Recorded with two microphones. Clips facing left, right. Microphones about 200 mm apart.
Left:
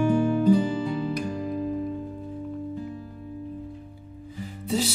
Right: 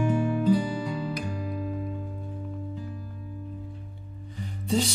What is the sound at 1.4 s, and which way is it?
Music, 35° left (ahead or behind).